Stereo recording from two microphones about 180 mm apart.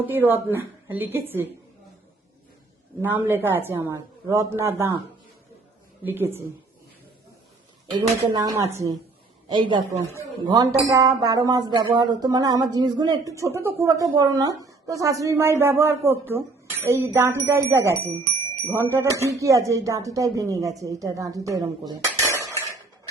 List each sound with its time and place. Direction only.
0.0 s speech: 10° right (ahead or behind)
3.0 s speech: 10° right (ahead or behind)
6.1 s speech: 10° right (ahead or behind)
7.9 s speech: 20° right (ahead or behind)
22.4 s dishes: 15° left (ahead or behind)